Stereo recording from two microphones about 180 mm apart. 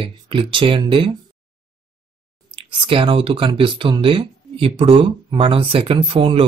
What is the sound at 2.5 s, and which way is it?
Speech, 30° right (ahead or behind).